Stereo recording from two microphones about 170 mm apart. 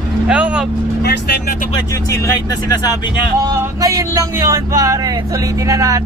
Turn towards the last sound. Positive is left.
turn(degrees=-20)  # may be behind; listen again after turning